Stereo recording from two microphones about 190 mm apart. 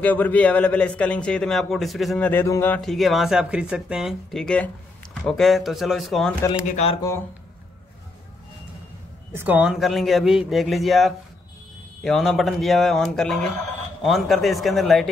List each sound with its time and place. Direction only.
0.0 s a man's voice: 10° left (ahead or behind)
6.7 s speech: 35° left (ahead or behind)
9.3 s a man's voice: 10° right (ahead or behind)